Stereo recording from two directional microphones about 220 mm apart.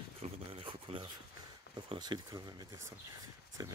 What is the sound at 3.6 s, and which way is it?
Speech, 15° right (ahead or behind).